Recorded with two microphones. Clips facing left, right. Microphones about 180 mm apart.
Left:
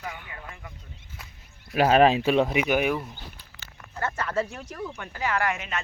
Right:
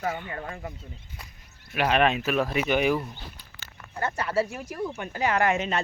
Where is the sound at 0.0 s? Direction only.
45° right (ahead or behind).